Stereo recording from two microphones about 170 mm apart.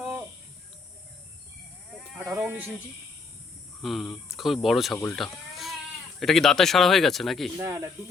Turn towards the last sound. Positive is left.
turn(degrees=-20)  # may be behind; listen again after turning